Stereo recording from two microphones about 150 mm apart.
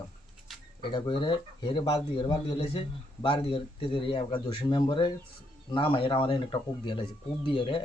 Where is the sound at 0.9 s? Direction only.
30° left (ahead or behind).